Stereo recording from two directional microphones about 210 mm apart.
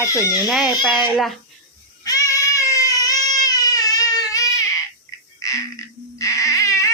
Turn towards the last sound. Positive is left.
turn(degrees=15)  # may be behind; listen again after turning